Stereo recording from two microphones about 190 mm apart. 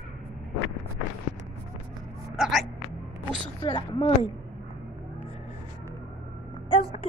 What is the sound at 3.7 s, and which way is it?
Speech, 25° left (ahead or behind).